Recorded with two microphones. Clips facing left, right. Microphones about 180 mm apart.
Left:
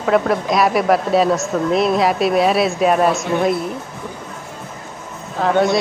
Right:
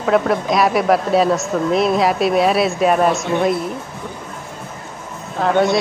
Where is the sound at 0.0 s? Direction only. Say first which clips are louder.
Even; centre (ahead or behind).